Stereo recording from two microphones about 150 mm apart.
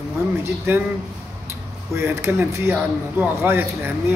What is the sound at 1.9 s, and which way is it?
Speech, 15° right (ahead or behind).